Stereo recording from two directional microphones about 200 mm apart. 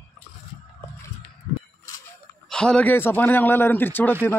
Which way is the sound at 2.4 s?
5° left (ahead or behind).